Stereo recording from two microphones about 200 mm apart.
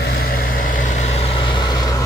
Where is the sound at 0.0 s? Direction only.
50° left (ahead or behind).